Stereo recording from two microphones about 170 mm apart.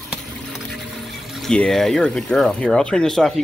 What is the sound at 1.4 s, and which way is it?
Speech, 5° left (ahead or behind).